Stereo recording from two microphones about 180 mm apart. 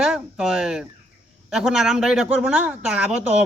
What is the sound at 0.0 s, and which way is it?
A man's voice, centre (ahead or behind).